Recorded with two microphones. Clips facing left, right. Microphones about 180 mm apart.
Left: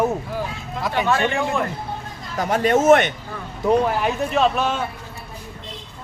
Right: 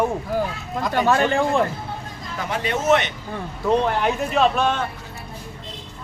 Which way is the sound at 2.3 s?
45° left (ahead or behind).